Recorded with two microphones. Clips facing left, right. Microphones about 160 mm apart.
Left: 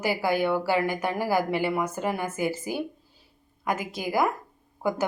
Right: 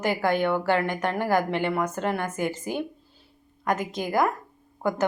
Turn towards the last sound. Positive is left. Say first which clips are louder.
# right 1 dB
turn(degrees=10)  # may be behind; listen again after turning